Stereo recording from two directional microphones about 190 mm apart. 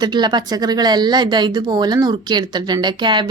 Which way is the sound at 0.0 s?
20° right (ahead or behind).